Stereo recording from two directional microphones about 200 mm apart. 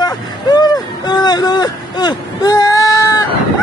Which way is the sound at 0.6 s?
20° left (ahead or behind).